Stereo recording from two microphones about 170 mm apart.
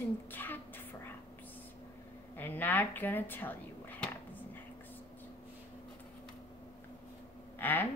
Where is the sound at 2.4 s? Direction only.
10° left (ahead or behind).